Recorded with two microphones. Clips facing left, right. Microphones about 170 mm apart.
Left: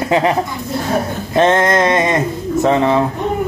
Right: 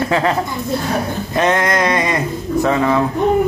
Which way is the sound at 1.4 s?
25° left (ahead or behind).